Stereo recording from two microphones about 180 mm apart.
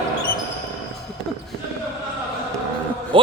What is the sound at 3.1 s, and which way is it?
Speech, 30° right (ahead or behind).